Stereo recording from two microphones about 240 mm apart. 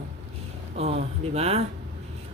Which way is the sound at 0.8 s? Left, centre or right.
Right.